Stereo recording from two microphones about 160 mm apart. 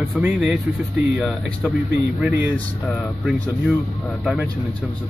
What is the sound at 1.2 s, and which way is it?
Speech, centre (ahead or behind).